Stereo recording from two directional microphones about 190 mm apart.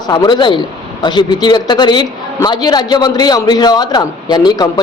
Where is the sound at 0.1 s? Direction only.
25° left (ahead or behind).